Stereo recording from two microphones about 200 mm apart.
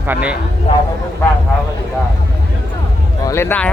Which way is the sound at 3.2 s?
10° left (ahead or behind).